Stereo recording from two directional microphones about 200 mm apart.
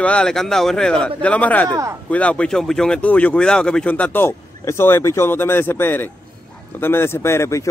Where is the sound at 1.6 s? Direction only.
15° right (ahead or behind).